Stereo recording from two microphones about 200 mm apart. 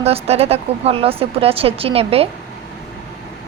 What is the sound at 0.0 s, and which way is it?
A woman's voice, 30° right (ahead or behind).